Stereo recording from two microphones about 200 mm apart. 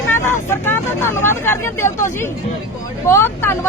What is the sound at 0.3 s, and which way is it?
Speech, 10° left (ahead or behind).